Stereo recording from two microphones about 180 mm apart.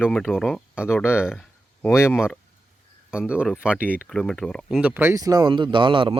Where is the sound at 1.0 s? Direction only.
15° left (ahead or behind).